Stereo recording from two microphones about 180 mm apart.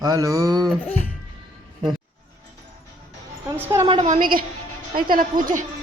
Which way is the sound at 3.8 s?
25° right (ahead or behind).